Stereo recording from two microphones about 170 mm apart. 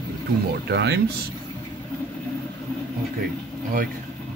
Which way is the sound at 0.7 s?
80° right.